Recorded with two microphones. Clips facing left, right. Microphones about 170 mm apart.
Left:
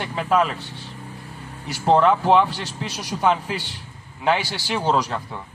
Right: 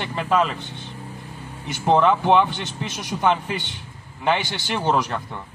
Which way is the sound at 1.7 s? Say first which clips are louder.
Left 1 dB; 5° left (ahead or behind).